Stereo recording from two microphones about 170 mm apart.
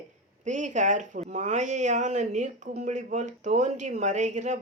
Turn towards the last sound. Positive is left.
turn(degrees=-45)  # may be behind; listen again after turning